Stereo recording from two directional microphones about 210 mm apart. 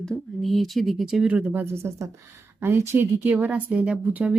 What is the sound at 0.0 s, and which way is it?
Speech, centre (ahead or behind).